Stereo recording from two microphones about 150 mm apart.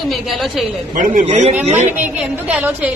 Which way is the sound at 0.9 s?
60° right (ahead or behind).